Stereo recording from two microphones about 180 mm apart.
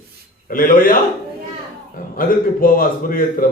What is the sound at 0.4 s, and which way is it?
Speech, 50° left (ahead or behind).